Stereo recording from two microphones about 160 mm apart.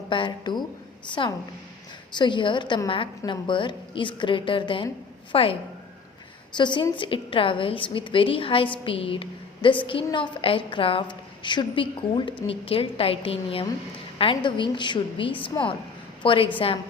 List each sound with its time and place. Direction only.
0.1 s a woman's voice: 30° left (ahead or behind)
2.1 s a woman's voice: 30° left (ahead or behind)
6.6 s a woman's voice: 30° left (ahead or behind)